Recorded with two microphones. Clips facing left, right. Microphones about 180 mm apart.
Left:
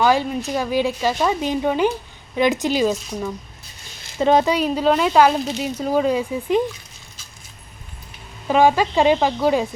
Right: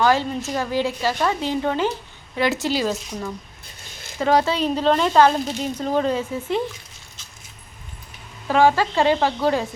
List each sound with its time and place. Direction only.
0.0 s speech: 15° left (ahead or behind)
8.4 s speech: 15° left (ahead or behind)